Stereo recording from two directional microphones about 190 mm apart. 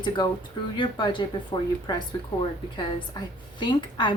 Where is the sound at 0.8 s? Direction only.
25° left (ahead or behind).